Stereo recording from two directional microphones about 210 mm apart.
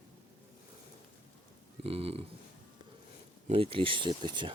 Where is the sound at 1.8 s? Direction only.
25° right (ahead or behind).